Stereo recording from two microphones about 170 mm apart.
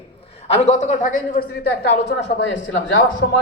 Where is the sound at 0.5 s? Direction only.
40° left (ahead or behind).